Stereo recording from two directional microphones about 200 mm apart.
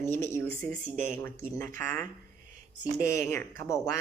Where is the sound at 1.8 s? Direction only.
10° left (ahead or behind).